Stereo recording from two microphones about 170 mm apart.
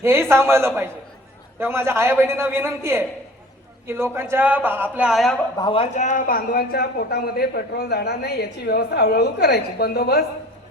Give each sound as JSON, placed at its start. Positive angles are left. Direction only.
{"t": 0.0, "sound": "a man's voice", "side_deg": -15}
{"t": 5.5, "sound": "a man's voice", "side_deg": 30}